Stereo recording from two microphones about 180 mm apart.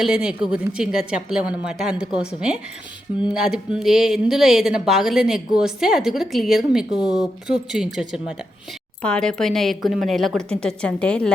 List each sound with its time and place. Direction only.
0.0 s speech: 5° right (ahead or behind)